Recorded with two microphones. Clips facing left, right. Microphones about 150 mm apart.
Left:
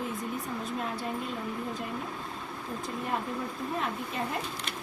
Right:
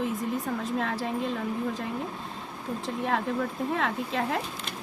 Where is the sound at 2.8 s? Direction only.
90° right.